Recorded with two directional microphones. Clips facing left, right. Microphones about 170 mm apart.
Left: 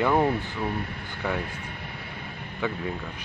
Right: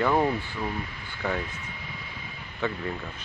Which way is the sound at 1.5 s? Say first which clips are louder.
Left 2 dB; 55° left (ahead or behind).